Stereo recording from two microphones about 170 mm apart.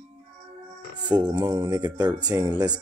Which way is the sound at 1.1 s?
25° right (ahead or behind).